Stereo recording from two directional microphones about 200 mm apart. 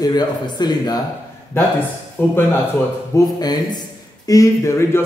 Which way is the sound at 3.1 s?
20° left (ahead or behind).